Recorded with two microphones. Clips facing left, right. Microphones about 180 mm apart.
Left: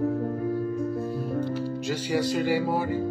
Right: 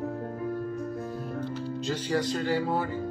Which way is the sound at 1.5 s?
10° left (ahead or behind).